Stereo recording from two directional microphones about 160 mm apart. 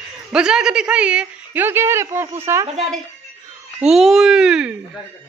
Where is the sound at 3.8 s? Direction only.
Centre (ahead or behind).